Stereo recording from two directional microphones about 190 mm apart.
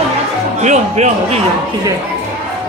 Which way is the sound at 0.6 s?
40° right (ahead or behind).